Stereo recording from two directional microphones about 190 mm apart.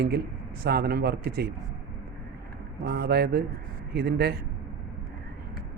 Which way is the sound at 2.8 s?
55° right (ahead or behind).